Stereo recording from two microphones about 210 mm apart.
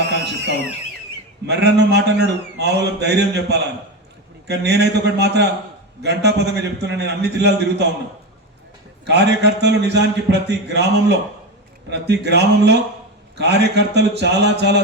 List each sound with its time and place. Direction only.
1.5 s a man's voice: 55° right (ahead or behind)
9.0 s a man's voice: 55° right (ahead or behind)